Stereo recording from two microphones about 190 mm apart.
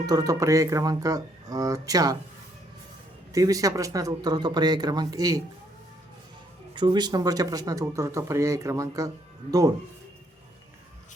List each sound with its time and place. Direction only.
0.0 s speech: 20° right (ahead or behind)
3.3 s speech: 20° right (ahead or behind)
6.7 s speech: 25° right (ahead or behind)